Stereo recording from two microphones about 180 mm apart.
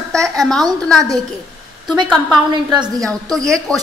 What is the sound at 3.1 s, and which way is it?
Speech, 5° left (ahead or behind).